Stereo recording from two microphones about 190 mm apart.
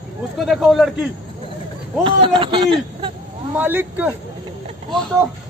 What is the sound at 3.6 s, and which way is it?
Speech, 10° right (ahead or behind).